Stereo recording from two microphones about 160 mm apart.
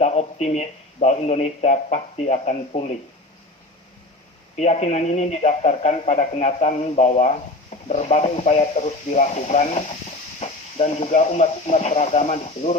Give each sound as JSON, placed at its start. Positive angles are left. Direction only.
{"t": 0.0, "sound": "speech", "side_deg": 45}
{"t": 4.5, "sound": "speech", "side_deg": 45}